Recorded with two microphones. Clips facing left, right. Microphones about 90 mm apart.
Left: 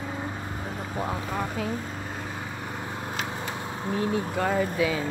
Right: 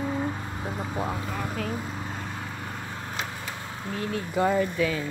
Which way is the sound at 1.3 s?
5° left (ahead or behind).